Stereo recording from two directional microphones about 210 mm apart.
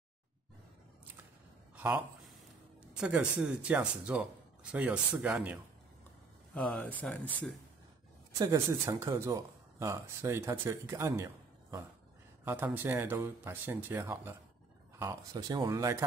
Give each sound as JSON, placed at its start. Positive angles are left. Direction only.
{"t": 3.0, "sound": "speech", "side_deg": -5}
{"t": 6.5, "sound": "speech", "side_deg": 5}
{"t": 8.4, "sound": "speech", "side_deg": -15}